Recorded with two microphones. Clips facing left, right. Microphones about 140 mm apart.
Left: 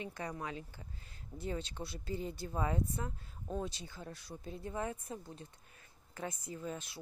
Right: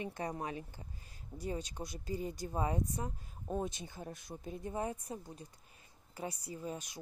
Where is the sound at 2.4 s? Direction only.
20° right (ahead or behind).